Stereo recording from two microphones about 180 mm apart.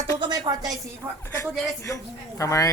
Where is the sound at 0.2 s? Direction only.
25° right (ahead or behind).